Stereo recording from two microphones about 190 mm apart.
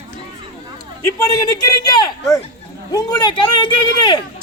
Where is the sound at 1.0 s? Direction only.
20° left (ahead or behind).